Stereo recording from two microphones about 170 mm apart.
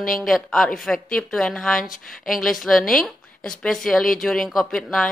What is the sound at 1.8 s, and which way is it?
Speech, 55° left (ahead or behind).